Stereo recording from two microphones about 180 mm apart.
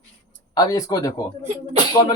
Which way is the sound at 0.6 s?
20° left (ahead or behind).